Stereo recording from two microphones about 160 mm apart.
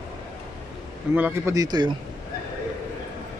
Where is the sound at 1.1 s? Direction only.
10° right (ahead or behind).